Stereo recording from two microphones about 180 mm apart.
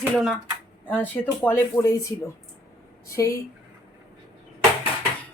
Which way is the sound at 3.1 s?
15° left (ahead or behind).